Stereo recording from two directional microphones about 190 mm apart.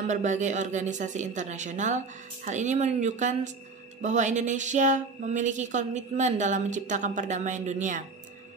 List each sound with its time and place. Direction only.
0.0 s speech: 40° right (ahead or behind)